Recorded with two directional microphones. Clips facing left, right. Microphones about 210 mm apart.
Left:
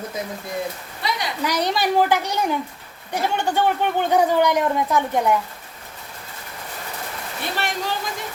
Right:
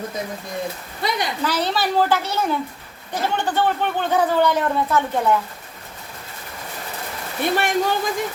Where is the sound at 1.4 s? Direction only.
15° left (ahead or behind).